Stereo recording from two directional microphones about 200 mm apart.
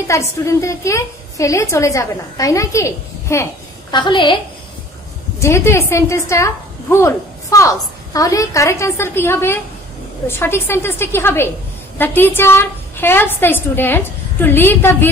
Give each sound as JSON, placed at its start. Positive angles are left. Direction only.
{"t": 0.1, "sound": "a woman's voice", "side_deg": 15}
{"t": 5.4, "sound": "a woman's voice", "side_deg": 15}